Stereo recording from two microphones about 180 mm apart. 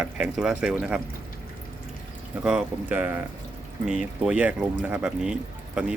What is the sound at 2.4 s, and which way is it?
Speech, 5° right (ahead or behind).